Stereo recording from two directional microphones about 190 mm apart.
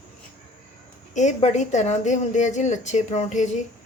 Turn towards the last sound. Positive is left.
turn(degrees=40)  # may be behind; listen again after turning